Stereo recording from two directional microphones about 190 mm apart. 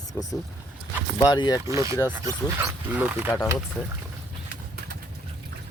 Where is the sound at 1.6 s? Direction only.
15° right (ahead or behind).